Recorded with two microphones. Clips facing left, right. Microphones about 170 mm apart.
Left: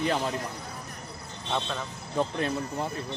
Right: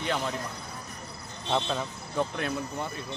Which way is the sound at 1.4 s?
10° right (ahead or behind).